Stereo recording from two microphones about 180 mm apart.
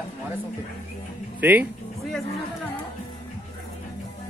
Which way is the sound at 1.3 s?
10° right (ahead or behind).